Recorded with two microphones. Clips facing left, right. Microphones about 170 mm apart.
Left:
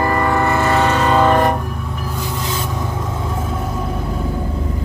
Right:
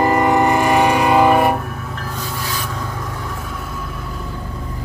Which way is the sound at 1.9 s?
10° left (ahead or behind).